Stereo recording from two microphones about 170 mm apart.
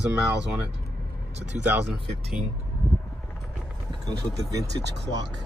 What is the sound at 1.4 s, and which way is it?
Speech, 40° right (ahead or behind).